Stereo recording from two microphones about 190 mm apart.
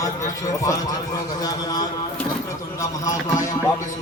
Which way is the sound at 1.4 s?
20° left (ahead or behind).